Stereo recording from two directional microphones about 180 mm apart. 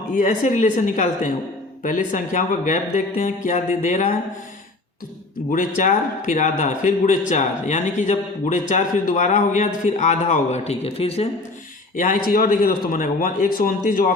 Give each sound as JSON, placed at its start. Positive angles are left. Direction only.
{"t": 0.2, "sound": "a man's voice", "side_deg": 45}
{"t": 5.5, "sound": "a man's voice", "side_deg": 50}
{"t": 11.9, "sound": "a man's voice", "side_deg": 50}